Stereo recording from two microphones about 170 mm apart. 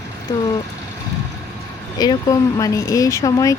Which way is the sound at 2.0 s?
20° left (ahead or behind).